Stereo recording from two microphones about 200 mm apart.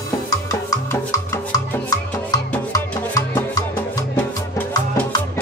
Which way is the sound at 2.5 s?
15° left (ahead or behind).